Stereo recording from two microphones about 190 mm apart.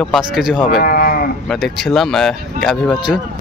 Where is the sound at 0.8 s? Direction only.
50° left (ahead or behind).